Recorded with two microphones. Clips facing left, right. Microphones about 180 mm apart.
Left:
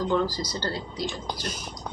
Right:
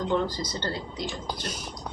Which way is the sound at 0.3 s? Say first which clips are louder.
Left 1 dB; 25° right (ahead or behind).